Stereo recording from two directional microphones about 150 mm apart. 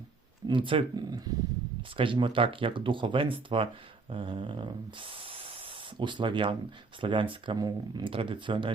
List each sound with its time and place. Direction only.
0.4 s speech: 35° right (ahead or behind)
4.1 s spray: 35° right (ahead or behind)
7.0 s speech: 35° right (ahead or behind)